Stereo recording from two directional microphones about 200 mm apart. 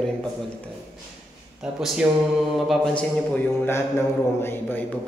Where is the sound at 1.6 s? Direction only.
5° right (ahead or behind).